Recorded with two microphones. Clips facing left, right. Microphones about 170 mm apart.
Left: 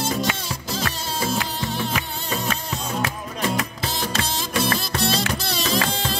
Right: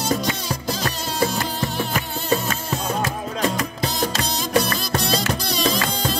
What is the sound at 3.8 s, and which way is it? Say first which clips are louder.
Music: right 3 dB; 45° right (ahead or behind).